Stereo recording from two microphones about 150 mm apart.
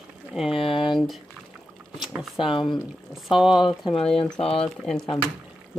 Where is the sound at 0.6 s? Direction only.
35° left (ahead or behind).